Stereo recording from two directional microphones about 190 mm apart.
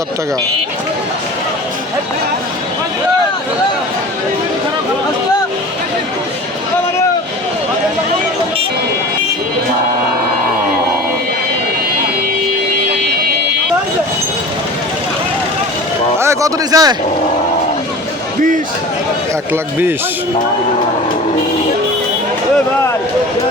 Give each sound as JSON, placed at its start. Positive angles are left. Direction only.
{"t": 16.1, "sound": "speech", "side_deg": -15}